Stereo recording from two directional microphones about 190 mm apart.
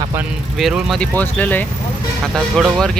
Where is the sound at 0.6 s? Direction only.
Centre (ahead or behind).